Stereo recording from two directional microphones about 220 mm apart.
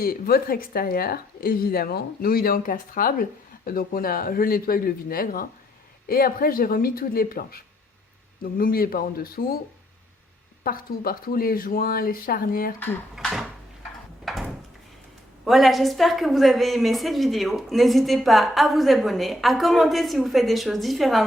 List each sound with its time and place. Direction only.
0.0 s a woman's voice: 40° left (ahead or behind)
10.6 s speech: 40° left (ahead or behind)
13.1 s a woman's voice: centre (ahead or behind)
14.3 s drawer open or close: centre (ahead or behind)
15.4 s a woman's voice: centre (ahead or behind)